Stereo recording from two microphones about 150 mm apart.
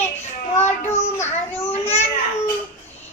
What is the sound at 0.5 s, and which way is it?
Speech, 50° left (ahead or behind).